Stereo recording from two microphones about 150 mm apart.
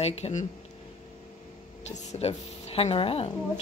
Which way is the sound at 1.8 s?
45° left (ahead or behind).